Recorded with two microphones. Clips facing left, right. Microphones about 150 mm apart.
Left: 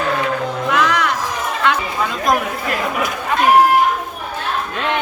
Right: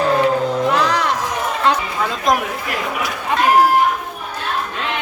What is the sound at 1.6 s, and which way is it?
Chatter, 35° right (ahead or behind).